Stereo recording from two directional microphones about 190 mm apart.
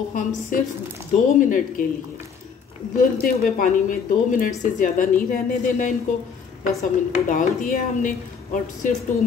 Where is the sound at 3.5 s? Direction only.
45° left (ahead or behind).